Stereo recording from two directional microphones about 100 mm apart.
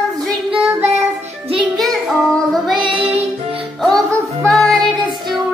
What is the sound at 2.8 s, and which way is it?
Music, 55° right (ahead or behind).